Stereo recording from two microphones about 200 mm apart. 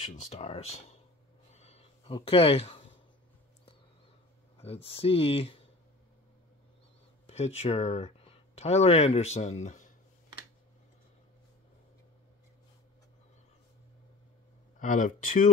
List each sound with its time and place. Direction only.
0.0 s speech: 35° left (ahead or behind)
1.5 s a sound: 30° left (ahead or behind)
4.6 s speech: 30° left (ahead or behind)
7.2 s speech: 35° left (ahead or behind)
14.8 s speech: 40° left (ahead or behind)